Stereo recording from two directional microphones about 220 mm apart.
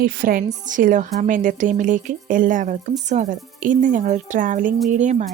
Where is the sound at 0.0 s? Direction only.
40° right (ahead or behind).